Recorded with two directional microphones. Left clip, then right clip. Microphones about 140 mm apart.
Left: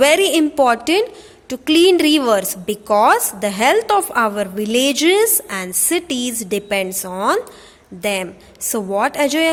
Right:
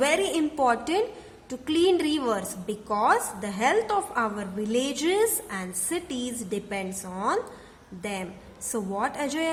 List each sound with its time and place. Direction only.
0.0 s a woman's voice: 40° left (ahead or behind)